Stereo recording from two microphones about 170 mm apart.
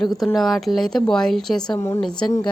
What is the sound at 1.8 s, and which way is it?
Speech, 20° left (ahead or behind).